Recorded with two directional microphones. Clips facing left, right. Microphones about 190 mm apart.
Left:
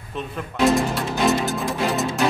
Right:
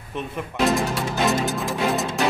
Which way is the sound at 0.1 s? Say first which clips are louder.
Even; 15° right (ahead or behind).